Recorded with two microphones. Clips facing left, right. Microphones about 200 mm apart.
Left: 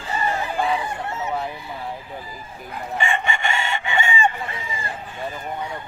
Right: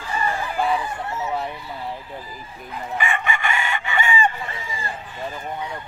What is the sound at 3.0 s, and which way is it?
Chicken, 30° left (ahead or behind).